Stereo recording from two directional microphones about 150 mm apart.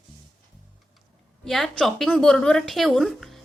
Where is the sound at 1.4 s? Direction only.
5° left (ahead or behind).